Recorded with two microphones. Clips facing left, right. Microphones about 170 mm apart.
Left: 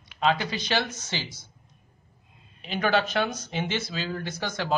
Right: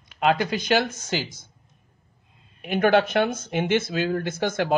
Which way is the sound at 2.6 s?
55° right (ahead or behind).